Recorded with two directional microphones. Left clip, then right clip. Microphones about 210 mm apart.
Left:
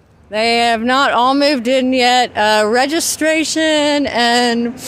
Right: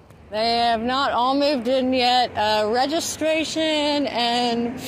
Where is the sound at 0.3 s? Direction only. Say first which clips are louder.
Left 6 dB; 50° left (ahead or behind).